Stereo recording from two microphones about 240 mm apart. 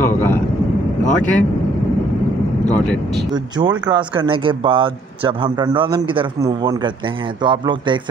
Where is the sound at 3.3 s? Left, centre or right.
Centre.